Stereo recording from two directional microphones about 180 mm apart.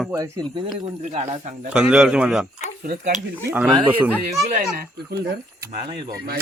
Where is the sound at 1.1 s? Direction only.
35° right (ahead or behind).